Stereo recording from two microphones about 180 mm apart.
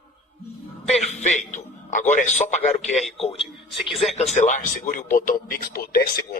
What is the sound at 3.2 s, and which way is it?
Speech, 30° left (ahead or behind).